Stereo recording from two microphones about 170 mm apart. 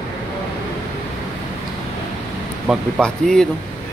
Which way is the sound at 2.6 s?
Centre (ahead or behind).